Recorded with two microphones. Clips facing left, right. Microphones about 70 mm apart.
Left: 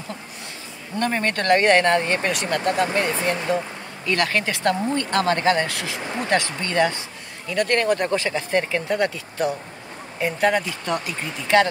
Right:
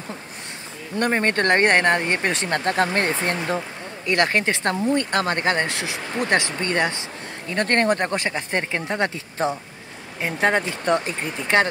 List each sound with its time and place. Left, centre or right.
0.9 s speech: right
3.5 s speech: right